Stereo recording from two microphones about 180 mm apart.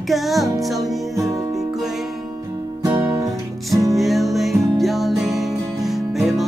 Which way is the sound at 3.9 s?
Centre (ahead or behind).